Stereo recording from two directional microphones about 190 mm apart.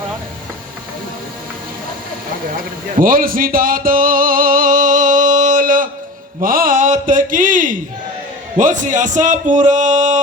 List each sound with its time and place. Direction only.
3.0 s music: 50° right (ahead or behind)
6.4 s a sound: 45° right (ahead or behind)
8.5 s speech: 40° right (ahead or behind)